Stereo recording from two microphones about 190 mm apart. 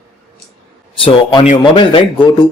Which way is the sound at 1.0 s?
30° left (ahead or behind).